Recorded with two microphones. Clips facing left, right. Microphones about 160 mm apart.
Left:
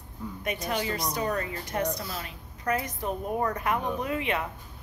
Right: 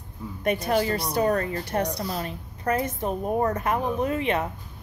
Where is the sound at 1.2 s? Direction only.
50° right (ahead or behind).